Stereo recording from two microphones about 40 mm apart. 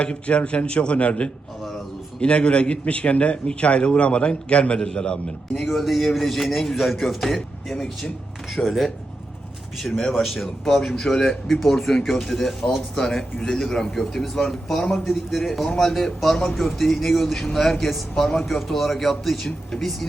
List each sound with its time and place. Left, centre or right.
0.0 s a man's voice: left
5.5 s a man's voice: centre
10.1 s a man's voice: centre